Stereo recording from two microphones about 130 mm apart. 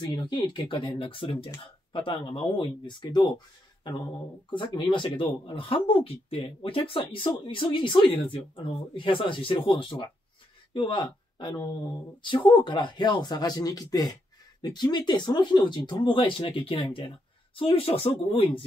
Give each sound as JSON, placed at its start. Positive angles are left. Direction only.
{"t": 0.0, "sound": "speech", "side_deg": 35}
{"t": 4.5, "sound": "speech", "side_deg": 35}